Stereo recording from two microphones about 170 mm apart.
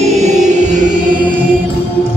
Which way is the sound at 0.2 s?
45° right (ahead or behind).